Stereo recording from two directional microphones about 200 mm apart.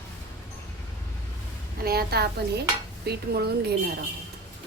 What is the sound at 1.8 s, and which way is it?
A woman's voice, 50° right (ahead or behind).